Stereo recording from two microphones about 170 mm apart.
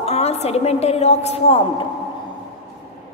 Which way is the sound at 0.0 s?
40° left (ahead or behind).